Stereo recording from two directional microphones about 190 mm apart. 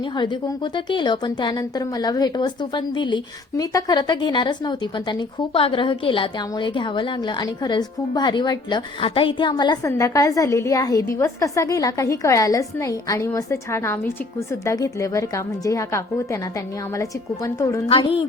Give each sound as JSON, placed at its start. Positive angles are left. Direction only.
{"t": 0.0, "sound": "a woman's voice", "side_deg": 25}
{"t": 17.8, "sound": "a woman's voice", "side_deg": 30}